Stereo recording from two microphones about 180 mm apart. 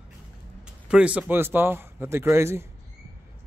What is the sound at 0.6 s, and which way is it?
Speech, 5° right (ahead or behind).